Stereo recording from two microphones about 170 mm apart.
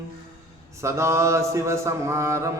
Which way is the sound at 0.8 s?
15° right (ahead or behind).